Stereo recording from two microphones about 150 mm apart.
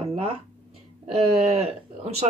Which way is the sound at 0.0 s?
40° right (ahead or behind).